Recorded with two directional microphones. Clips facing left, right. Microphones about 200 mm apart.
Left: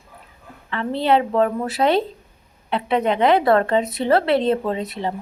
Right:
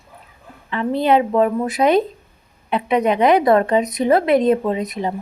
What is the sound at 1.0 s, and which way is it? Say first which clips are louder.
A woman's voice: right 2 dB; 15° right (ahead or behind).